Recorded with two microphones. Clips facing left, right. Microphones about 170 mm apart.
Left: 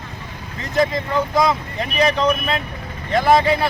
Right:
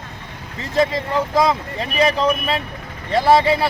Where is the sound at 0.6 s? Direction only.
30° right (ahead or behind).